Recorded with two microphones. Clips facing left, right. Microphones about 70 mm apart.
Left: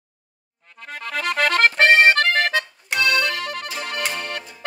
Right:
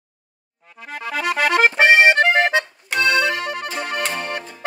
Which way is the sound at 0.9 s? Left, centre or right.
Centre.